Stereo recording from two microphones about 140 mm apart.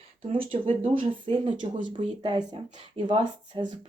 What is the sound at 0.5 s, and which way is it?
Speech, 50° right (ahead or behind).